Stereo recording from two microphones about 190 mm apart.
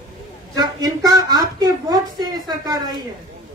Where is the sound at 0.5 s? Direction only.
20° right (ahead or behind).